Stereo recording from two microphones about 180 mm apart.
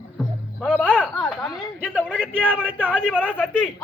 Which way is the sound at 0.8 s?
5° left (ahead or behind).